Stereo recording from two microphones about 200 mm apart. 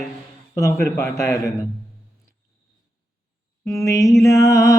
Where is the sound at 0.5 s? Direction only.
15° left (ahead or behind).